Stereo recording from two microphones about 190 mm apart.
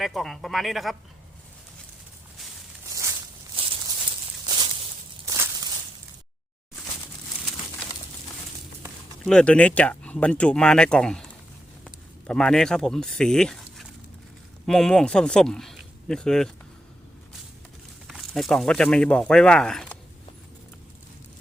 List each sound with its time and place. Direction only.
0.0 s speech: centre (ahead or behind)
2.9 s walk: 15° right (ahead or behind)
3.5 s a sound: 30° right (ahead or behind)
9.2 s speech: 5° left (ahead or behind)
18.1 s speech: centre (ahead or behind)